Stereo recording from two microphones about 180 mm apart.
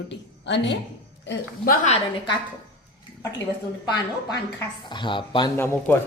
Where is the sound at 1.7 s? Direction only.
40° left (ahead or behind).